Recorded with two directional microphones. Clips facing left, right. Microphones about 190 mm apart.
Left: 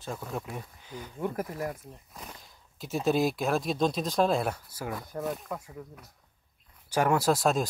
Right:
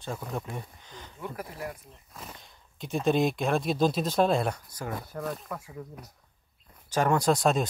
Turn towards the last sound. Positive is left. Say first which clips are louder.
# right 1 dB
turn(degrees=0)  # may be behind; listen again after turning